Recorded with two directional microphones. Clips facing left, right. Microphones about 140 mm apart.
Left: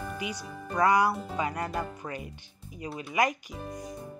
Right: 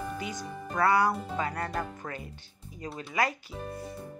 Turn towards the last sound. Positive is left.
turn(degrees=20)  # may be behind; listen again after turning